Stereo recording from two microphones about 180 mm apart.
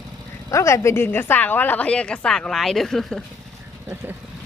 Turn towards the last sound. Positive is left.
turn(degrees=-15)  # may be behind; listen again after turning